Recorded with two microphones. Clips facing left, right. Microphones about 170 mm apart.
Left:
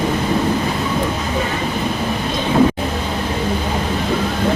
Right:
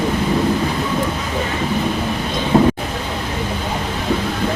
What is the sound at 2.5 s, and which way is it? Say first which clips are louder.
Vehicle: right 1 dB; 20° right (ahead or behind).